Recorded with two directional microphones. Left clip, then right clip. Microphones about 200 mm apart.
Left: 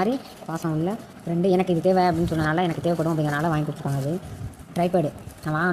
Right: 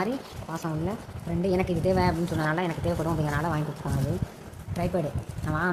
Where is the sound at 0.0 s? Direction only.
20° left (ahead or behind).